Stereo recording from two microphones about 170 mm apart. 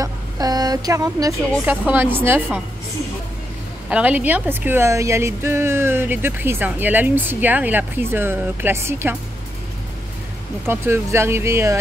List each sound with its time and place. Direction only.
0.0 s speech: 20° right (ahead or behind)
3.9 s speech: 10° right (ahead or behind)
10.7 s speech: 15° right (ahead or behind)